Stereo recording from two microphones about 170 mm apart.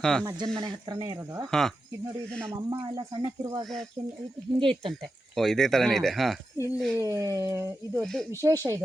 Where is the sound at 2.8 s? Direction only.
25° right (ahead or behind).